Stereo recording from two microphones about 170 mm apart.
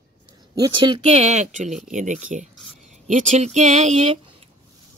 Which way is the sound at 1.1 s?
40° right (ahead or behind).